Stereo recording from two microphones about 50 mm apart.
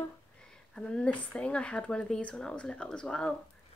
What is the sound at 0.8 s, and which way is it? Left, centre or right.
Speech, centre.